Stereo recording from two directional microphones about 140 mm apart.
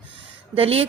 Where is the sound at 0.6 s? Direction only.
45° right (ahead or behind).